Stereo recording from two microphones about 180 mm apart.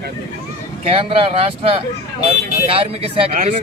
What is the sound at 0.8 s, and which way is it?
Speech, 30° right (ahead or behind).